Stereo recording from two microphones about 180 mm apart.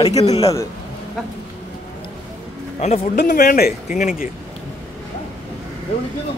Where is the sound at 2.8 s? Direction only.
40° left (ahead or behind).